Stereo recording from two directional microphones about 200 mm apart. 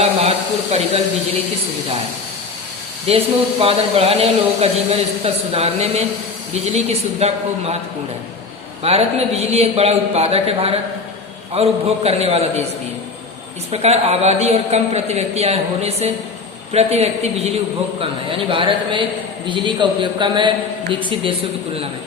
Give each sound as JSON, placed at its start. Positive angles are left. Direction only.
{"t": 0.0, "sound": "speech", "side_deg": -30}
{"t": 3.1, "sound": "speech", "side_deg": -30}
{"t": 8.8, "sound": "speech", "side_deg": -30}
{"t": 13.7, "sound": "a man's voice", "side_deg": -30}